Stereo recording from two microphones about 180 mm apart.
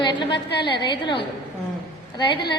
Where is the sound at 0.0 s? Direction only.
25° left (ahead or behind).